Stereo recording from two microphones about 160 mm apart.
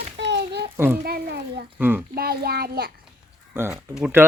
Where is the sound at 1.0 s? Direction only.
80° right.